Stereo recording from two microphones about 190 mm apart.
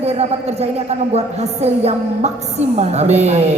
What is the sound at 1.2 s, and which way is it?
A man's voice, 35° right (ahead or behind).